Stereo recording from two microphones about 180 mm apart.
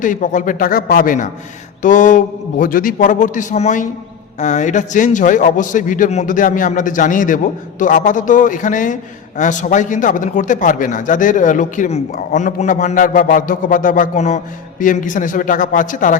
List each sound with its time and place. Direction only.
0.0 s a man's voice: 45° left (ahead or behind)